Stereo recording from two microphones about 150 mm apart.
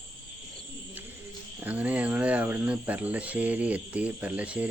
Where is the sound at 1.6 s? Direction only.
10° right (ahead or behind).